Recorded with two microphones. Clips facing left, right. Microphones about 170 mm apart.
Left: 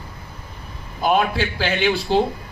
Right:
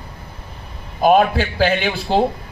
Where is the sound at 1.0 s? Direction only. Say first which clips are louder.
Right 5 dB; 50° right (ahead or behind).